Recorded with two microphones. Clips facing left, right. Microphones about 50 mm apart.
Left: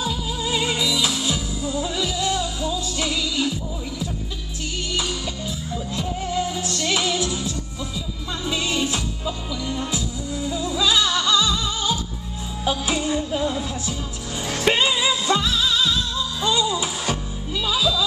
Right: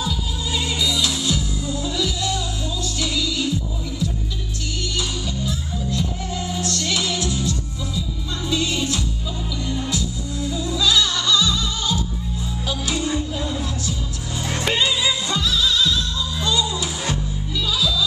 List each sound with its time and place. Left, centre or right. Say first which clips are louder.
0.0 s music: left 1 dB; left
6.7 s music: left 1 dB; left